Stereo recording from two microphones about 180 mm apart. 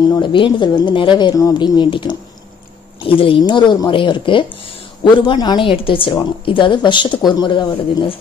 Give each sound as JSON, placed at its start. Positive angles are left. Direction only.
{"t": 0.1, "sound": "a woman's voice", "side_deg": 25}